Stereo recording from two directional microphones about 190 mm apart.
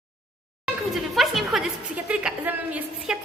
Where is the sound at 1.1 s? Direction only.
Centre (ahead or behind).